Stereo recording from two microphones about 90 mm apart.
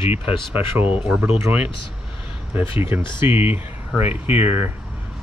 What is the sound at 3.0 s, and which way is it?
Speech, 65° left (ahead or behind).